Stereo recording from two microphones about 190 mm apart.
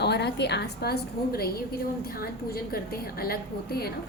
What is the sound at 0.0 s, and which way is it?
A woman's voice, 60° left (ahead or behind).